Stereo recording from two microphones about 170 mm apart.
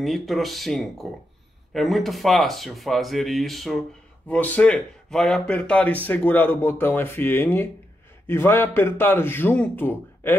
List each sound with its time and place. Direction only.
0.0 s speech: centre (ahead or behind)